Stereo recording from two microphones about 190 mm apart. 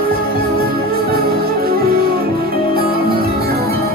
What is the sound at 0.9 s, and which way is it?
Music, 55° right (ahead or behind).